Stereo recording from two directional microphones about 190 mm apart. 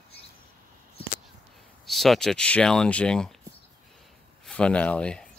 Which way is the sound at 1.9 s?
Centre (ahead or behind).